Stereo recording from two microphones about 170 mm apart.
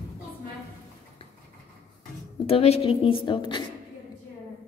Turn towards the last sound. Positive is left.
turn(degrees=30)  # may be behind; listen again after turning